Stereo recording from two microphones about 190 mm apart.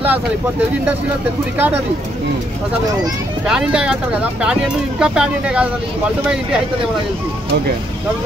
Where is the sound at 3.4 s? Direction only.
5° right (ahead or behind).